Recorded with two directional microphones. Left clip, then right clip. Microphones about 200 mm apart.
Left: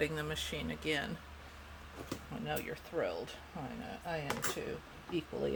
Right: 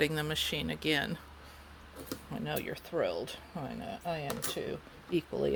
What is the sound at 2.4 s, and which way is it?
Speech, 60° right (ahead or behind).